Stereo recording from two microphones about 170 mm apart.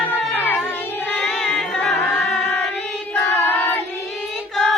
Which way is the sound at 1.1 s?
5° left (ahead or behind).